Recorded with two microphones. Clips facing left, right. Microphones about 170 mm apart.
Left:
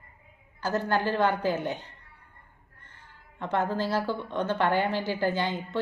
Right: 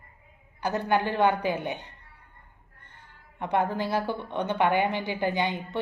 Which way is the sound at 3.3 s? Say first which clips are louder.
Right 1 dB; 15° right (ahead or behind).